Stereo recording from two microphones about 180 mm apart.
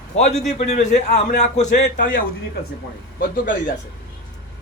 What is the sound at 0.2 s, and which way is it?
A man's voice, 40° left (ahead or behind).